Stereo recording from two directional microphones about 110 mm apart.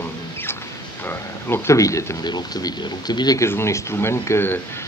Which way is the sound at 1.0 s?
20° left (ahead or behind).